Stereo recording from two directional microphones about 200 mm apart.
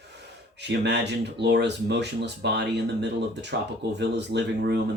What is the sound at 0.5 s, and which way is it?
Speech, 60° right (ahead or behind).